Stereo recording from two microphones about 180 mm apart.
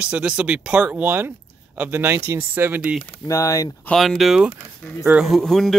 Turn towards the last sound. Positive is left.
turn(degrees=0)  # may be behind; listen again after turning